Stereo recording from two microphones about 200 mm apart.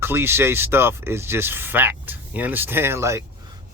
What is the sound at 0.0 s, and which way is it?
Speech, 10° right (ahead or behind).